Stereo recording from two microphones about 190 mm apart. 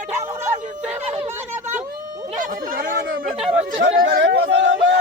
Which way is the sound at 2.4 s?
45° right (ahead or behind).